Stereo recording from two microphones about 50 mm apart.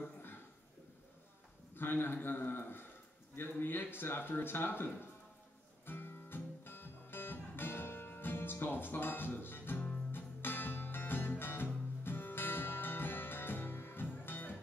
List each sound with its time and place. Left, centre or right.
1.8 s speech: left
5.9 s music: left